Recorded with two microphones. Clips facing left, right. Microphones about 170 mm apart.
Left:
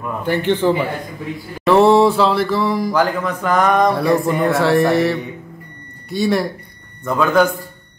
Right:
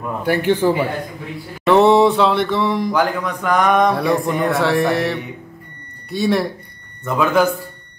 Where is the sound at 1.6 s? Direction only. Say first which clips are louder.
Even; centre (ahead or behind).